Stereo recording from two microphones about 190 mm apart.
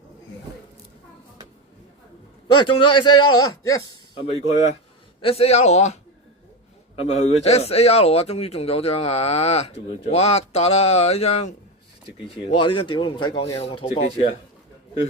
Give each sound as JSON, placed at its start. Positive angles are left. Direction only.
{"t": 2.6, "sound": "a man's voice", "side_deg": 25}